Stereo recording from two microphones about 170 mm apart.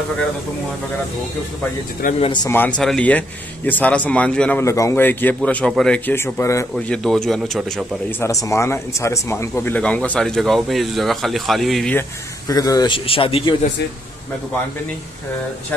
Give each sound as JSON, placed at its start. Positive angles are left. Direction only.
{"t": 2.0, "sound": "speech", "side_deg": 55}
{"t": 2.4, "sound": "speech", "side_deg": 15}
{"t": 6.7, "sound": "speech", "side_deg": 5}
{"t": 8.2, "sound": "speech", "side_deg": 20}
{"t": 12.4, "sound": "a man's voice", "side_deg": 20}